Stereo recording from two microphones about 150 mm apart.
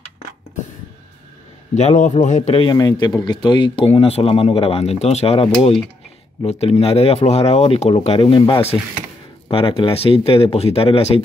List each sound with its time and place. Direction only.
1.8 s speech: 50° left (ahead or behind)
2.5 s a man's voice: 30° left (ahead or behind)